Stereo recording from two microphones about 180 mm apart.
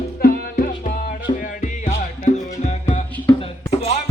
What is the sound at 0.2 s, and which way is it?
Music, 55° left (ahead or behind).